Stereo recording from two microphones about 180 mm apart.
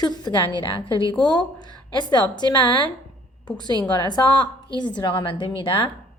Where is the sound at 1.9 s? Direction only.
25° left (ahead or behind).